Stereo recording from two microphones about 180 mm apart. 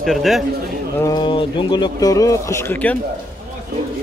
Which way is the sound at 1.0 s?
25° left (ahead or behind).